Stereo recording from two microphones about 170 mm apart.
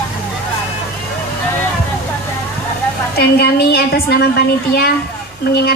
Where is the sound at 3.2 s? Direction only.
70° left (ahead or behind).